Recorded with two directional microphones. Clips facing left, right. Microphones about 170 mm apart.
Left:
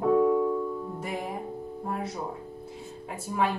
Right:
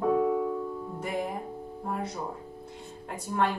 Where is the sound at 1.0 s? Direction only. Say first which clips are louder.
Right 5 dB; centre (ahead or behind).